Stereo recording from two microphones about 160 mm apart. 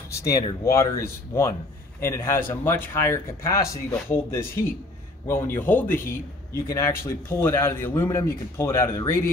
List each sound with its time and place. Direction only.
0.3 s a man's voice: 20° left (ahead or behind)